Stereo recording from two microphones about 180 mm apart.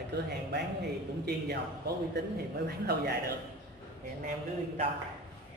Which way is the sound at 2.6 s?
60° right (ahead or behind).